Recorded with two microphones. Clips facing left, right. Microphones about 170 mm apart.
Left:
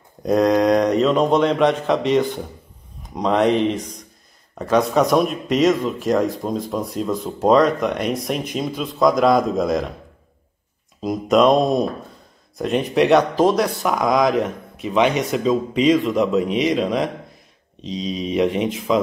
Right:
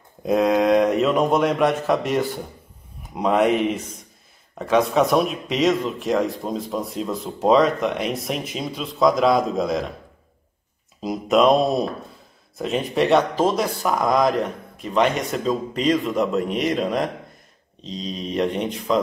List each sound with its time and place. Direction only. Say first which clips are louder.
0.2 s speech: left 2 dB; 5° right (ahead or behind)
11.0 s speech: left 2 dB; centre (ahead or behind)
12.5 s speech: left 3 dB; centre (ahead or behind)